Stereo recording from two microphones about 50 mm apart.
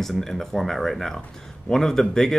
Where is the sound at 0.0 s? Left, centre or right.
Centre.